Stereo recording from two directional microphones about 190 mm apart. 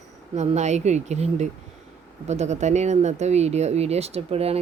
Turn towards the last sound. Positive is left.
turn(degrees=-30)  # may be behind; listen again after turning